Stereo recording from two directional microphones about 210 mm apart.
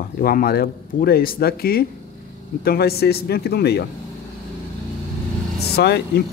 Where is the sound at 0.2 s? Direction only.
45° left (ahead or behind).